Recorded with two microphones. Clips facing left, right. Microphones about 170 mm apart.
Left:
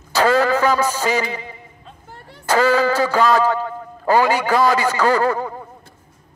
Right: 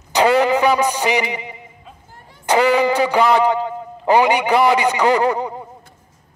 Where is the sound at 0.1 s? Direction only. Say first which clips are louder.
Right 2 dB; 20° right (ahead or behind).